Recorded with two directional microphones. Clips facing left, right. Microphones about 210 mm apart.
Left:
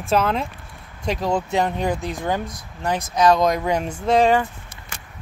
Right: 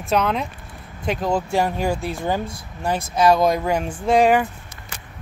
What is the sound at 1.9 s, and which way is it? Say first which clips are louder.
Speech: right 1 dB; 15° left (ahead or behind).